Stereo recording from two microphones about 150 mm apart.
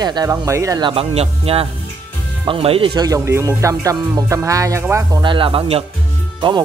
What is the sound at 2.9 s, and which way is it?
Music, 20° right (ahead or behind).